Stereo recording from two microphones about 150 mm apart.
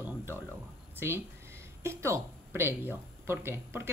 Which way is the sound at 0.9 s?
15° right (ahead or behind).